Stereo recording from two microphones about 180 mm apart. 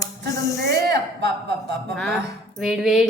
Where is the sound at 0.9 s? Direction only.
65° right (ahead or behind).